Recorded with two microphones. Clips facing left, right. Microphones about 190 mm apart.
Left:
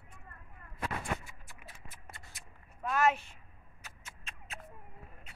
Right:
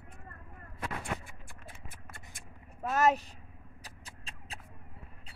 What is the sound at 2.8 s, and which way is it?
Speech, 40° right (ahead or behind).